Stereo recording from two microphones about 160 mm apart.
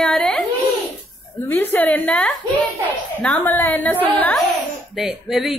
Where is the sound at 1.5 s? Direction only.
10° left (ahead or behind).